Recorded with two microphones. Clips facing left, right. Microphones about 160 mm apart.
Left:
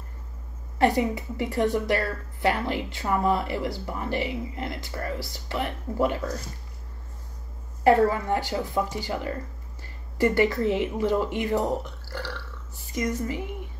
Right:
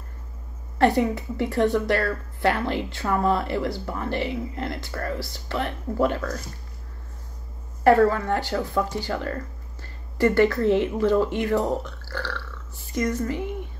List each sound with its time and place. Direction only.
0.7 s speech: 10° left (ahead or behind)
7.9 s speech: 15° left (ahead or behind)